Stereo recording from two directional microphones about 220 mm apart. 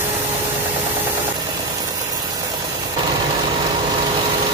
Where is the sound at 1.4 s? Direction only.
15° right (ahead or behind).